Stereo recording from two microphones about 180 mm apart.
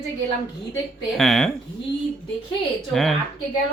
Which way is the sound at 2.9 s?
Centre (ahead or behind).